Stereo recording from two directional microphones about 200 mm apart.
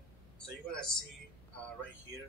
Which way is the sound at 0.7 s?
5° left (ahead or behind).